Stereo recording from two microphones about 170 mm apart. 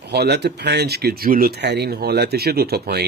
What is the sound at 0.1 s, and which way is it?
Speech, 75° right (ahead or behind).